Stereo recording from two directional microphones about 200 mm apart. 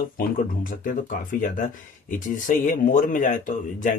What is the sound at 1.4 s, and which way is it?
Speech, 40° left (ahead or behind).